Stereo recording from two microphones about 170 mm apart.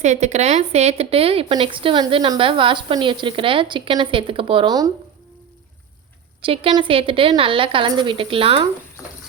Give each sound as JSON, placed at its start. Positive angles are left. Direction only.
{"t": 0.0, "sound": "a woman's voice", "side_deg": -45}
{"t": 6.4, "sound": "a woman's voice", "side_deg": -30}